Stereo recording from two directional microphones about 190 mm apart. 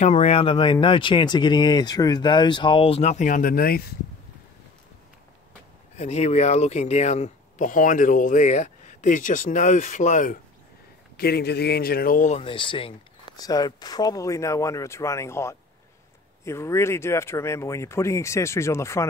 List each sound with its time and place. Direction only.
0.0 s speech: 35° left (ahead or behind); by 3.9 s 55° left (ahead or behind)
5.9 s speech: 35° left (ahead or behind)
11.1 s a man's voice: 55° left (ahead or behind); by 19.0 s 15° left (ahead or behind)